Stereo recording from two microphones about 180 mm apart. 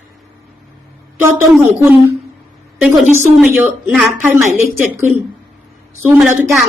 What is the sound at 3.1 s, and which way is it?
A woman's voice, 10° right (ahead or behind).